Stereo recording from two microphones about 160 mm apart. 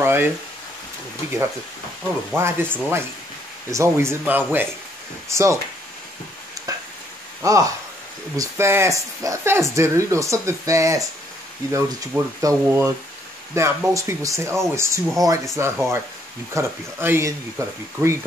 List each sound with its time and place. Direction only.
0.0 s a sound: 15° right (ahead or behind)
2.3 s speech: 15° right (ahead or behind)
7.4 s speech: 20° right (ahead or behind)